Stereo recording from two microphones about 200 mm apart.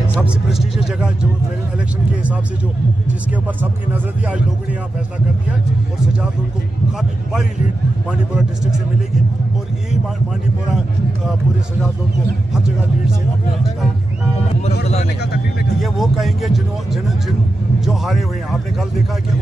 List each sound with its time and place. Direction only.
0.2 s speech: centre (ahead or behind)
8.1 s speech: centre (ahead or behind)
14.6 s speech: 30° left (ahead or behind)
15.8 s speech: centre (ahead or behind)